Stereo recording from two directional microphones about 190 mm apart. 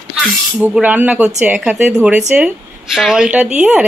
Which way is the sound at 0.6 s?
10° right (ahead or behind).